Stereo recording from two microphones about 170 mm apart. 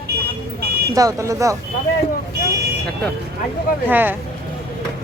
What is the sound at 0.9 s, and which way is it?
Speech, 20° right (ahead or behind).